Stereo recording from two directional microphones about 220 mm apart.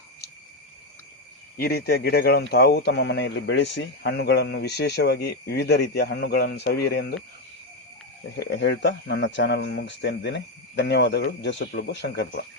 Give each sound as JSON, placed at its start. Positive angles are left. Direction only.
{"t": 1.5, "sound": "speech", "side_deg": 45}
{"t": 8.4, "sound": "speech", "side_deg": 50}